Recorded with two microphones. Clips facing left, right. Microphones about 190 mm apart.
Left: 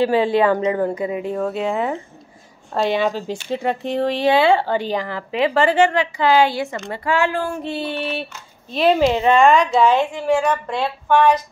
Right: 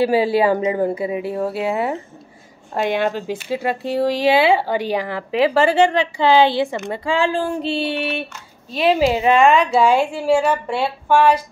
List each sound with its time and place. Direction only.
0.0 s a woman's voice: 10° right (ahead or behind)
3.3 s a woman's voice: 5° right (ahead or behind)
5.9 s speech: 25° right (ahead or behind)
6.7 s speech: 15° right (ahead or behind)
7.9 s a woman's voice: 15° right (ahead or behind)